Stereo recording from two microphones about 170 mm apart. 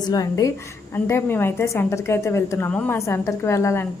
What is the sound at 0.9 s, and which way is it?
A woman's voice, 10° left (ahead or behind).